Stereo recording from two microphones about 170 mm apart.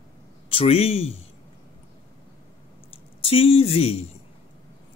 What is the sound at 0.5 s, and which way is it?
Speech, 35° left (ahead or behind).